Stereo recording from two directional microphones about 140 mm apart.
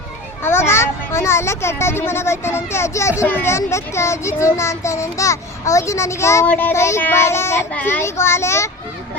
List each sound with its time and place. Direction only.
0.4 s speech: 15° left (ahead or behind)